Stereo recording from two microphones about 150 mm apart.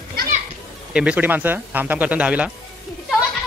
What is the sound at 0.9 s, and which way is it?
A man's voice, 10° right (ahead or behind).